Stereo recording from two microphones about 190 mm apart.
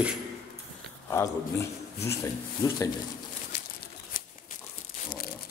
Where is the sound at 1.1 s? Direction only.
15° left (ahead or behind).